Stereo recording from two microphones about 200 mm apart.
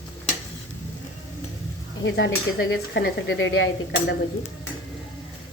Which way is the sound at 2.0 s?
65° left (ahead or behind).